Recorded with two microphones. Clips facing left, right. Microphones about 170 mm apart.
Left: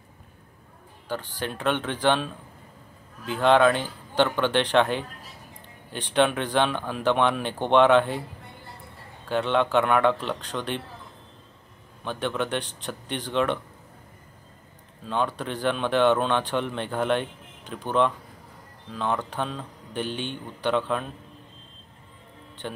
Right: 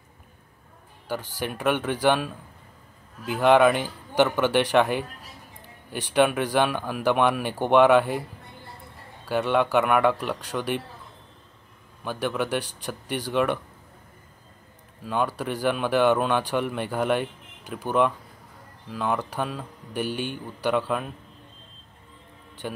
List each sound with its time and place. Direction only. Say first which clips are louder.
1.4 s speech: right 2 dB; 10° right (ahead or behind)
6.1 s speech: right 1 dB; 5° right (ahead or behind)
9.2 s speech: right 1 dB; 5° right (ahead or behind)
12.0 s speech: right 1 dB; 5° right (ahead or behind)
15.0 s speech: right 1 dB; 5° right (ahead or behind)
22.6 s speech: right 2 dB; 10° right (ahead or behind)